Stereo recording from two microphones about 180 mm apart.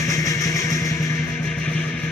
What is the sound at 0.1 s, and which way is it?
Vehicle, 20° left (ahead or behind).